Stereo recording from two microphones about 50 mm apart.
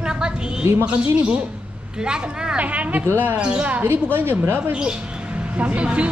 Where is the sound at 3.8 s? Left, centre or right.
Right.